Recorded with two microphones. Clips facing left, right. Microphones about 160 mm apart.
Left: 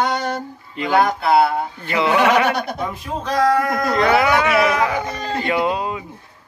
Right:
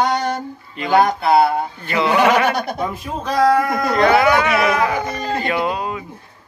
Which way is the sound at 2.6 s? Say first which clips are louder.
Right 2 dB; 5° right (ahead or behind).